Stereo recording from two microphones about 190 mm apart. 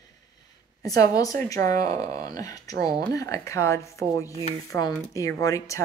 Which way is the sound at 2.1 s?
20° left (ahead or behind).